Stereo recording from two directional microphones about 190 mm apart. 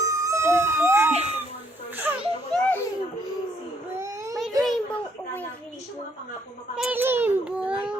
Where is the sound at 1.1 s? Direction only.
35° right (ahead or behind).